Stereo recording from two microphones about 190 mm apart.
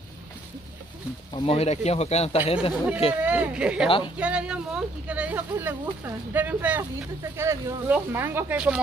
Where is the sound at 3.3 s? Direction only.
5° right (ahead or behind).